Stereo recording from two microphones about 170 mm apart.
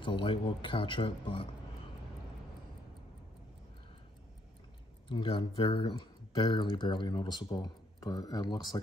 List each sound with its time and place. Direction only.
0.0 s speech: 30° left (ahead or behind)
5.0 s speech: 30° left (ahead or behind)